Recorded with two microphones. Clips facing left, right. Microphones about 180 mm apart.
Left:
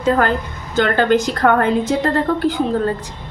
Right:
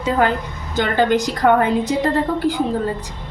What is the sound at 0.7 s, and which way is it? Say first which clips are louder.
A woman's voice: left 2 dB; 15° right (ahead or behind).